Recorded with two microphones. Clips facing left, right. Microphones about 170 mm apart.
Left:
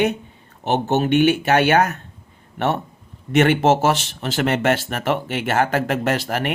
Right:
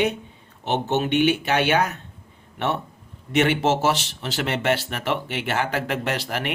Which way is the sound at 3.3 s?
50° left (ahead or behind).